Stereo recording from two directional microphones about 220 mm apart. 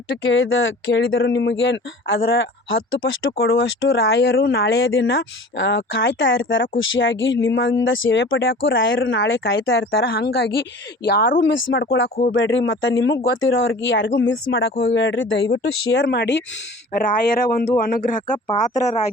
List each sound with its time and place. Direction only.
0.1 s speech: 60° left (ahead or behind)
9.9 s speech: 45° left (ahead or behind)